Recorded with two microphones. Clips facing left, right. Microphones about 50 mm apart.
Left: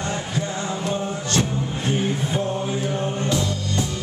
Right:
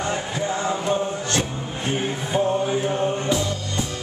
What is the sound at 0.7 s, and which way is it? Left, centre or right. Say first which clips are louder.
Mantra: right 3 dB; centre.